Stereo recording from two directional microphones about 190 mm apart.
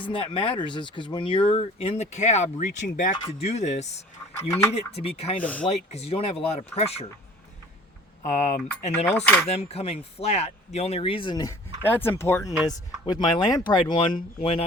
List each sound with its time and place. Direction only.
0.1 s speech: 30° left (ahead or behind); by 3.2 s 45° left (ahead or behind)
3.2 s speech: 35° left (ahead or behind)
5.4 s speech: 5° left (ahead or behind)
5.6 s speech: 35° left (ahead or behind)
8.2 s speech: 40° left (ahead or behind)
9.0 s speech: 10° left (ahead or behind)
9.5 s speech: 35° left (ahead or behind)